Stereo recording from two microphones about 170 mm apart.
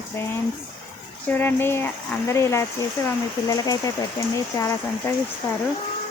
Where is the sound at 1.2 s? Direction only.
10° left (ahead or behind).